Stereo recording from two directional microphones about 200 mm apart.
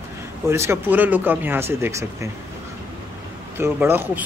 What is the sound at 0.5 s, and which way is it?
Speech, 10° right (ahead or behind).